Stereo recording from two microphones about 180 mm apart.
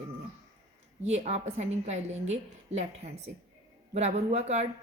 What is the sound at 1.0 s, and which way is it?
A woman's voice, 40° right (ahead or behind).